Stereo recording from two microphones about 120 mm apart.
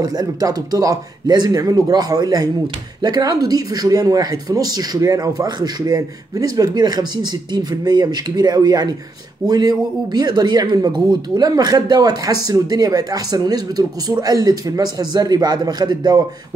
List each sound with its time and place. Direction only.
0.0 s speech: 30° right (ahead or behind)